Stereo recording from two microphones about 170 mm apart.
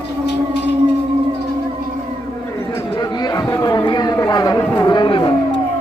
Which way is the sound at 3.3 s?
20° left (ahead or behind).